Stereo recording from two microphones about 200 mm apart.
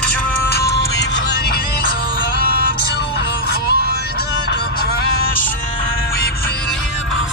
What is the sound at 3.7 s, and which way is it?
Music, 50° left (ahead or behind).